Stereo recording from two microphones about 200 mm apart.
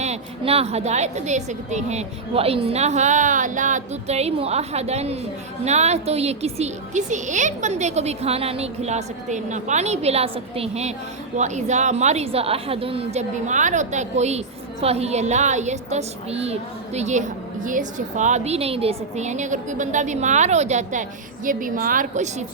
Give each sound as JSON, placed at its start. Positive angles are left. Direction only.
{"t": 0.0, "sound": "a woman's voice", "side_deg": -30}